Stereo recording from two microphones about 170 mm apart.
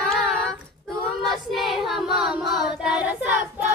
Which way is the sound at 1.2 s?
Centre (ahead or behind).